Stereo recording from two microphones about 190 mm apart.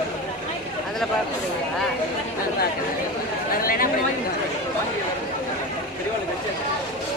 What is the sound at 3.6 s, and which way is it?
Chatter, 50° left (ahead or behind).